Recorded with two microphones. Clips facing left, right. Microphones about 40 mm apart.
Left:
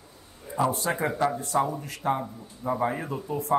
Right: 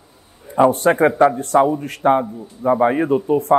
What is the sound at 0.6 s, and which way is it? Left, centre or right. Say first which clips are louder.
Speech: right 12 dB; right.